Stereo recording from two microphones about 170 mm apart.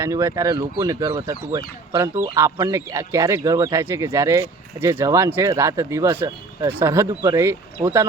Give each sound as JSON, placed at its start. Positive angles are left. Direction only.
{"t": 0.0, "sound": "speech", "side_deg": -15}